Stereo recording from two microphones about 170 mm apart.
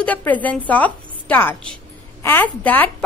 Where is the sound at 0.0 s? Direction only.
10° left (ahead or behind).